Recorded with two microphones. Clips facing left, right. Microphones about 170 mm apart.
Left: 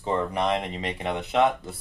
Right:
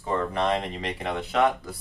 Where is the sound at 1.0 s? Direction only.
20° left (ahead or behind).